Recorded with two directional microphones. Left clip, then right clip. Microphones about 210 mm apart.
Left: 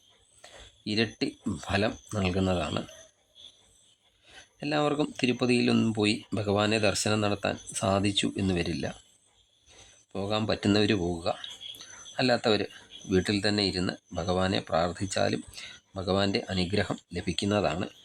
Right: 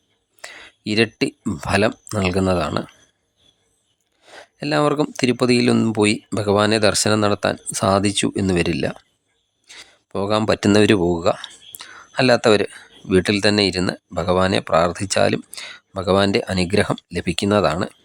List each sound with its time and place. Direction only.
0.4 s speech: 30° right (ahead or behind)
4.2 s speech: 30° right (ahead or behind)